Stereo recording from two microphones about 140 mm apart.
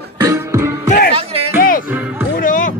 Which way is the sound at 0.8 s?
70° left (ahead or behind).